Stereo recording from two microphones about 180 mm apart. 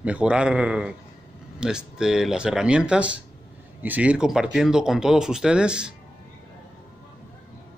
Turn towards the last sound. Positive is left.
turn(degrees=-5)  # may be behind; listen again after turning